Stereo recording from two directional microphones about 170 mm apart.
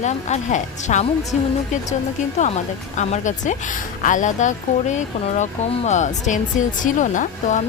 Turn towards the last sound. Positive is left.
turn(degrees=50)  # may be behind; listen again after turning